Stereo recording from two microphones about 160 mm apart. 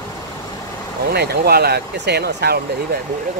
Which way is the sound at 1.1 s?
80° right.